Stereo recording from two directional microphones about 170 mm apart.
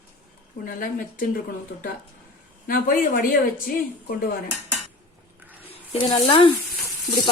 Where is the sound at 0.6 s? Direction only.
55° left (ahead or behind).